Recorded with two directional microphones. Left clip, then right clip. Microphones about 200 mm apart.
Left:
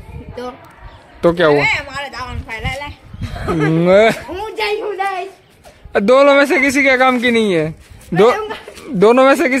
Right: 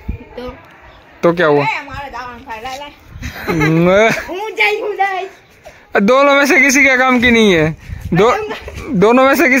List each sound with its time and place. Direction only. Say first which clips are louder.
1.2 s speech: even; 5° right (ahead or behind)
1.6 s a sound: left 1 dB; 60° left (ahead or behind)
3.2 s speech: right 2 dB; 40° right (ahead or behind)
3.7 s a man's voice: left 1 dB; 10° right (ahead or behind)
4.3 s a sound: right 5 dB; 5° right (ahead or behind)
5.9 s a man's voice: even; 15° right (ahead or behind)